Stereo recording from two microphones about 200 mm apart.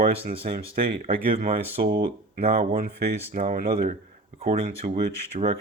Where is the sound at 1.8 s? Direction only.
50° right (ahead or behind).